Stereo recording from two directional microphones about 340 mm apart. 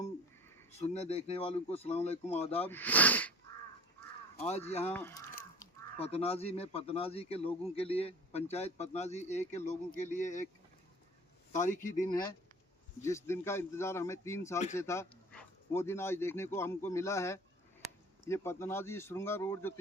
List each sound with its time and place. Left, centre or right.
0.8 s speech: centre
2.6 s speech: centre
4.7 s speech: centre
4.9 s speech: centre
5.5 s speech: centre
11.5 s speech: left
13.0 s speech: centre